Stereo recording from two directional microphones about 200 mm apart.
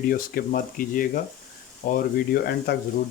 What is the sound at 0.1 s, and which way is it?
Speech, 45° left (ahead or behind).